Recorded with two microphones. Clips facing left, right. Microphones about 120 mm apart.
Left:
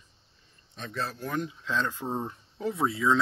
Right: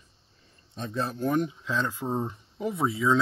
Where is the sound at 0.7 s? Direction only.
25° right (ahead or behind).